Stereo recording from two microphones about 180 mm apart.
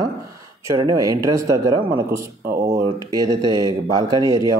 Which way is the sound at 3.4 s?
25° left (ahead or behind).